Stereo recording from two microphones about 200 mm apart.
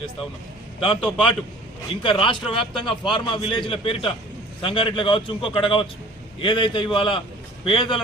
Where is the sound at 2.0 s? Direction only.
25° left (ahead or behind).